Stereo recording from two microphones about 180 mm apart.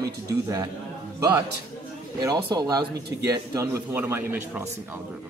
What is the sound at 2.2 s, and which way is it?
Speech, 20° right (ahead or behind).